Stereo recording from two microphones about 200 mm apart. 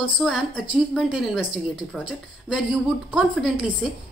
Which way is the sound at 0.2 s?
Centre (ahead or behind).